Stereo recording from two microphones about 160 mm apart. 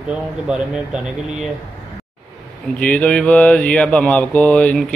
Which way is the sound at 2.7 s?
10° left (ahead or behind).